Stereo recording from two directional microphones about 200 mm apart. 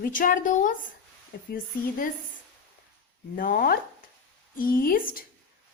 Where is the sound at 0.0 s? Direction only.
40° left (ahead or behind).